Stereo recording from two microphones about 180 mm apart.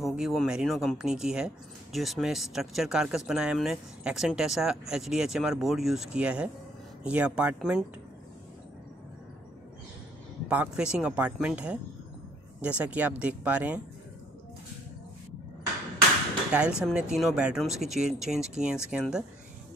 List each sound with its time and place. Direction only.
0.0 s speech: centre (ahead or behind)
10.5 s speech: 5° right (ahead or behind)
16.5 s speech: 5° right (ahead or behind)